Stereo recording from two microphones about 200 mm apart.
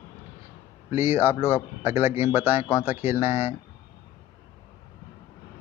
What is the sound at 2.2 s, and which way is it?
Speech, 30° left (ahead or behind).